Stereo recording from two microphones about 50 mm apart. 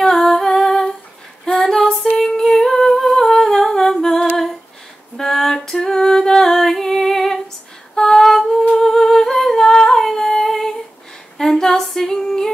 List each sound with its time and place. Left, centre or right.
0.0 s humming: centre
5.1 s female singing: centre
8.7 s humming: centre
11.3 s female singing: centre